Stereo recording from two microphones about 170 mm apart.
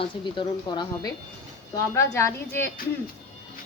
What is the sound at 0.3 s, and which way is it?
Speech, 25° left (ahead or behind).